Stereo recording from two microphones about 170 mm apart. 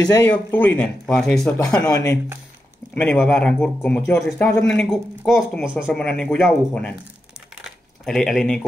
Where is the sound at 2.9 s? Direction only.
5° left (ahead or behind).